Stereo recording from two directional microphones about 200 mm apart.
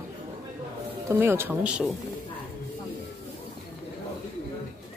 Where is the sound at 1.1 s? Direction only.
10° right (ahead or behind).